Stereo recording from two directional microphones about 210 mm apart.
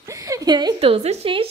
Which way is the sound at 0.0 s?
15° right (ahead or behind).